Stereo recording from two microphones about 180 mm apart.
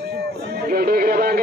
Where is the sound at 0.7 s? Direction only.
55° right (ahead or behind).